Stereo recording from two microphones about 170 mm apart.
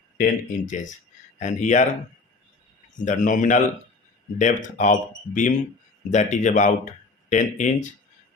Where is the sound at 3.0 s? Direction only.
50° left (ahead or behind).